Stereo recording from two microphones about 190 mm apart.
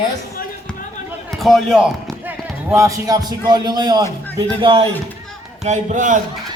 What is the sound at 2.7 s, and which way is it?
A man's voice, 15° right (ahead or behind).